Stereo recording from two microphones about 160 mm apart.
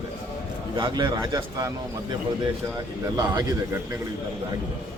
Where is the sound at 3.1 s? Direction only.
20° right (ahead or behind).